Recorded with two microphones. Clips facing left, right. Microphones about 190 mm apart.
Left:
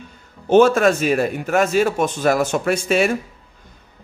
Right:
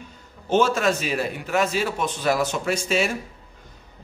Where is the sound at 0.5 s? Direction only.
55° left (ahead or behind).